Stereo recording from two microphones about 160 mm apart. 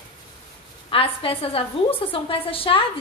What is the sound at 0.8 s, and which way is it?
A woman's voice, 35° left (ahead or behind).